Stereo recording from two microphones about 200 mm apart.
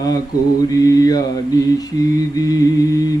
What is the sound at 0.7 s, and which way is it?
Mantra, 20° left (ahead or behind).